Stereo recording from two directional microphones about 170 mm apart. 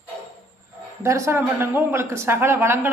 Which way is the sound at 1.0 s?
15° right (ahead or behind).